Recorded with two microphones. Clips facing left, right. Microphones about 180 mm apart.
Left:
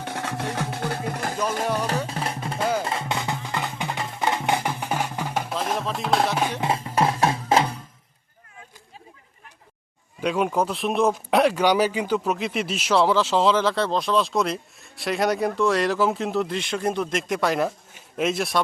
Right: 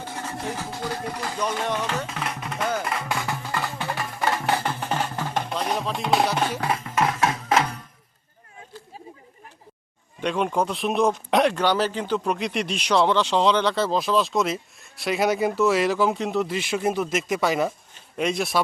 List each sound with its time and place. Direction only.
0.0 s music: 70° left (ahead or behind); by 1.4 s 55° left (ahead or behind)
1.7 s music: 35° left (ahead or behind); by 6.6 s centre (ahead or behind)
6.6 s music: 25° left (ahead or behind)
10.2 s speech: 5° left (ahead or behind)